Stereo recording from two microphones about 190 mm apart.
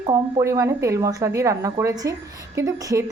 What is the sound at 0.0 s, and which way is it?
A woman's voice, 20° right (ahead or behind).